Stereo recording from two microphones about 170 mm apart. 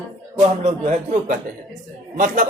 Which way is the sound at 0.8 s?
45° right (ahead or behind).